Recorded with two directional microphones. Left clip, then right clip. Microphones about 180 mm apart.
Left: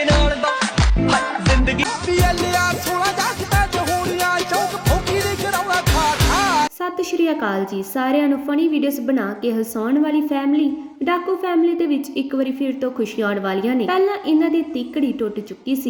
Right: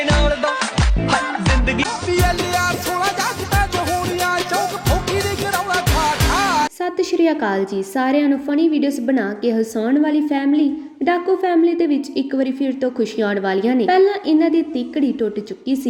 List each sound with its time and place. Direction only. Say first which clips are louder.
0.2 s music: even; centre (ahead or behind)
6.8 s a woman's voice: right 3 dB; 20° right (ahead or behind)